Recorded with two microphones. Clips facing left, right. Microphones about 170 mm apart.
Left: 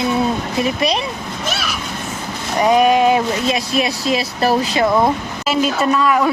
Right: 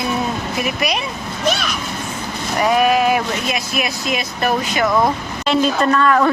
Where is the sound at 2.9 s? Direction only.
25° left (ahead or behind).